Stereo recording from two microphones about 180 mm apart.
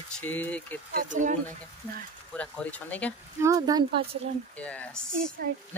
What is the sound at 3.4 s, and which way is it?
Speech, 20° right (ahead or behind).